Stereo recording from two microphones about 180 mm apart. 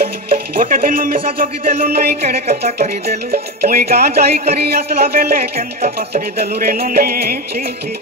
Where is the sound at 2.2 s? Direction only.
35° right (ahead or behind).